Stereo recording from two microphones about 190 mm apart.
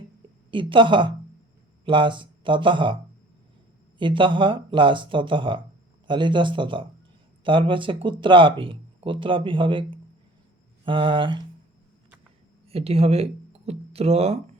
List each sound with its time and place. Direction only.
0.5 s speech: 25° right (ahead or behind)
12.7 s speech: 30° right (ahead or behind)